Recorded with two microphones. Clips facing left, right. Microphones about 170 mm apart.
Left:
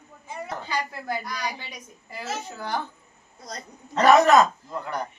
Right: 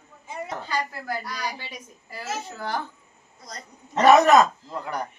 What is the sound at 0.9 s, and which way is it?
A woman's voice, 20° left (ahead or behind).